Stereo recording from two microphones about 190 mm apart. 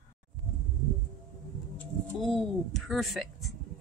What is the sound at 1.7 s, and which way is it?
Speech, 5° left (ahead or behind).